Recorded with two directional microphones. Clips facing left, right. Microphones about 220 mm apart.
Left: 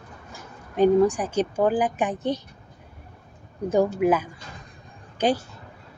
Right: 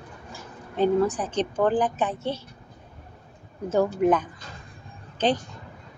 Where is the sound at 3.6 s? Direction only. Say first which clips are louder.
Left 1 dB; 15° left (ahead or behind).